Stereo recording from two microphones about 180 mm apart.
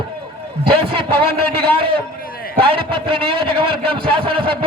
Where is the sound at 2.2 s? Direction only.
55° left (ahead or behind).